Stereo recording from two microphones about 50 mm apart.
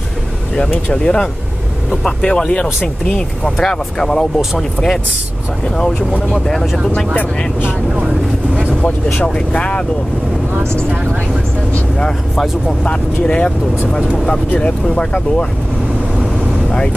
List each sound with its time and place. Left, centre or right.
0.9 s speech: centre
6.1 s speech: left
6.4 s speech: centre
9.2 s speech: left
12.8 s speech: left